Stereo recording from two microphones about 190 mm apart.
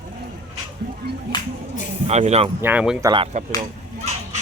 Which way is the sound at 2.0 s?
35° right (ahead or behind).